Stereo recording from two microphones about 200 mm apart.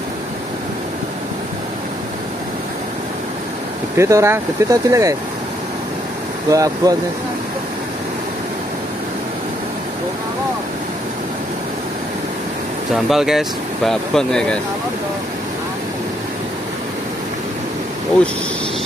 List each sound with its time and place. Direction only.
3.9 s speech: 15° right (ahead or behind)
6.5 s speech: 15° right (ahead or behind)
12.9 s speech: centre (ahead or behind)